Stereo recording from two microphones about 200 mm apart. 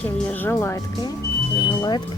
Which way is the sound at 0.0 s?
10° left (ahead or behind).